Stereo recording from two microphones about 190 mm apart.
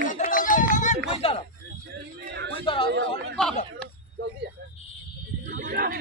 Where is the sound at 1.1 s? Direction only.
30° left (ahead or behind).